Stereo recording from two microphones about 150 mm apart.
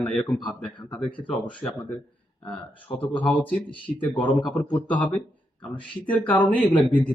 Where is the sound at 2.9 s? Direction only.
10° left (ahead or behind).